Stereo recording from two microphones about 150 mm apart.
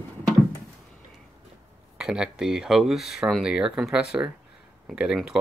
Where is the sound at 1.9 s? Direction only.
5° right (ahead or behind).